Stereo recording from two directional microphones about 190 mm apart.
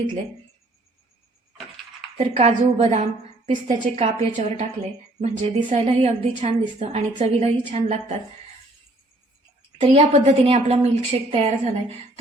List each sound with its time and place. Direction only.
2.1 s a woman's voice: 35° right (ahead or behind)
9.8 s a woman's voice: 35° right (ahead or behind)